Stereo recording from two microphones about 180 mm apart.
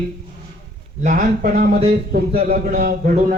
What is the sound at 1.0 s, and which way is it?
Speech, 45° right (ahead or behind).